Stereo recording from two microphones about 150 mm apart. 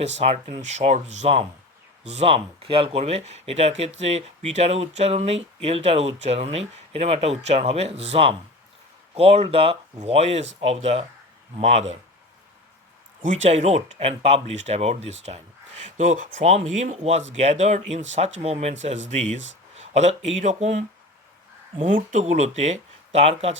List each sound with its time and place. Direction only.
0.0 s speech: 45° right (ahead or behind)
13.2 s speech: 50° right (ahead or behind)
16.0 s speech: 55° right (ahead or behind)